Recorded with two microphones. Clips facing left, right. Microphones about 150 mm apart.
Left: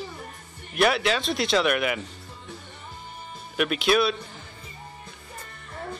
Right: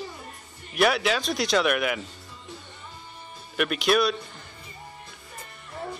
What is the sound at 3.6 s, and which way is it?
Speech, centre (ahead or behind).